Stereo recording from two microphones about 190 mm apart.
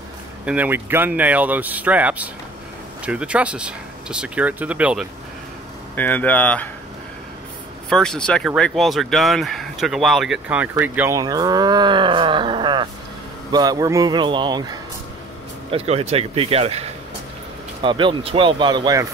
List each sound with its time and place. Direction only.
0.5 s speech: 10° right (ahead or behind)
5.9 s speech: 10° left (ahead or behind)
7.9 s speech: 5° left (ahead or behind); by 14.8 s 20° right (ahead or behind)
15.7 s speech: 35° right (ahead or behind)